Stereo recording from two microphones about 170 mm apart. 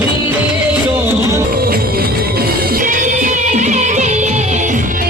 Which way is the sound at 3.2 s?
45° right (ahead or behind).